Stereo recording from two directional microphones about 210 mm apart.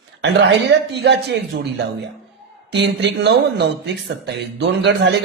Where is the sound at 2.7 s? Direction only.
55° right (ahead or behind).